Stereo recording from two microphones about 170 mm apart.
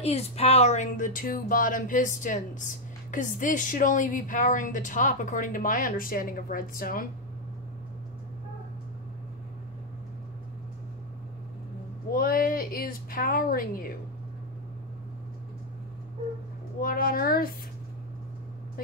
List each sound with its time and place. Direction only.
0.0 s speech: 35° left (ahead or behind); by 7.1 s 55° left (ahead or behind)
12.1 s speech: 60° left (ahead or behind)
16.8 s a child's voice: 55° left (ahead or behind)